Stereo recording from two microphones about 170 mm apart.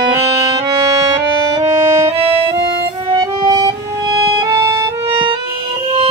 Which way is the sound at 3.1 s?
25° right (ahead or behind).